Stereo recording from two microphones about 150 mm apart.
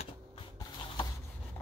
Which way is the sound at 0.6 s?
30° left (ahead or behind).